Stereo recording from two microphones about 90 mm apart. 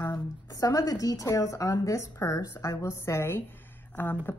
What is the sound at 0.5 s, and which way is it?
A woman's voice, 40° left (ahead or behind).